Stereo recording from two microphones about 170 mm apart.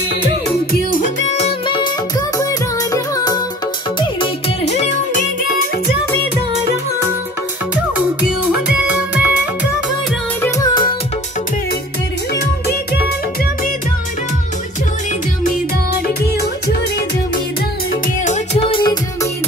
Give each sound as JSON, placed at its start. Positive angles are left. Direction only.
{"t": 0.7, "sound": "music", "side_deg": 50}
{"t": 1.8, "sound": "music", "side_deg": 20}
{"t": 4.2, "sound": "music", "side_deg": 40}
{"t": 8.6, "sound": "music", "side_deg": -10}
{"t": 10.4, "sound": "music", "side_deg": 25}
{"t": 12.4, "sound": "music", "side_deg": 70}
{"t": 18.2, "sound": "music", "side_deg": 40}